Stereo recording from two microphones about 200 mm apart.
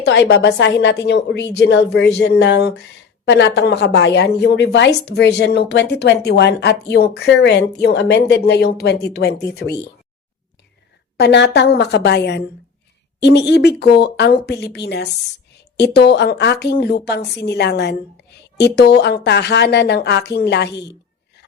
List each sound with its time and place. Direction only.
0.0 s a woman's voice: 60° left (ahead or behind)
11.2 s a woman's voice: 60° left (ahead or behind)